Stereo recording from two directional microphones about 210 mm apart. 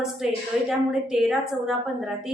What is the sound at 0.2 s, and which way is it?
A woman's voice, centre (ahead or behind).